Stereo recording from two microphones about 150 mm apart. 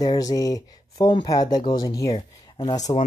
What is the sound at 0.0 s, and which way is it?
Speech, 25° left (ahead or behind).